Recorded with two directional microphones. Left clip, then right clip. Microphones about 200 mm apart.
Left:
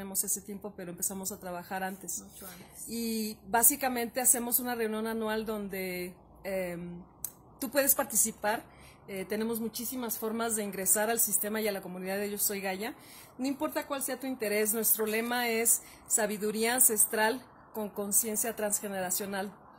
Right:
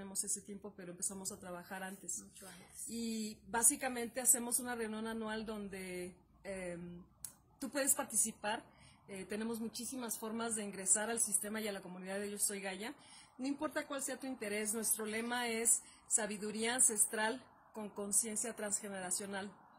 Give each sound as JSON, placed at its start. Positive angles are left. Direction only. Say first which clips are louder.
{"t": 0.0, "sound": "a woman's voice", "louder": "left 8 dB", "side_deg": 15}
{"t": 3.0, "sound": "a woman's voice", "louder": "left 8 dB", "side_deg": 15}